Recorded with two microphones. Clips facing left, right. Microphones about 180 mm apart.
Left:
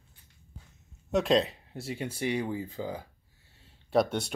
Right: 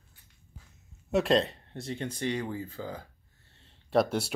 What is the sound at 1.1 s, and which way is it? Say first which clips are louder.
Speech: even; centre (ahead or behind).